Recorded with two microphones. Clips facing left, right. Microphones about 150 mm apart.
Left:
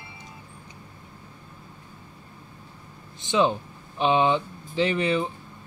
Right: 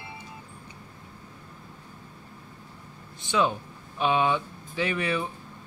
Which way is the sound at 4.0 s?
25° left (ahead or behind).